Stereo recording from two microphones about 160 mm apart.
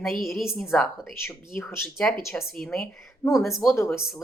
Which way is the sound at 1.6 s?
15° left (ahead or behind).